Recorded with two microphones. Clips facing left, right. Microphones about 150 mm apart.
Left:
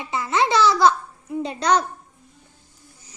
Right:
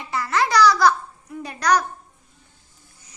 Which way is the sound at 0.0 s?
20° left (ahead or behind).